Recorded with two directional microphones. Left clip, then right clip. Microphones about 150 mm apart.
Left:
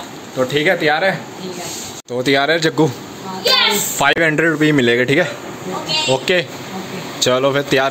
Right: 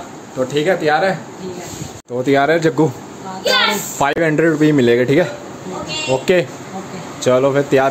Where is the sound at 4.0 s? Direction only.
5° right (ahead or behind).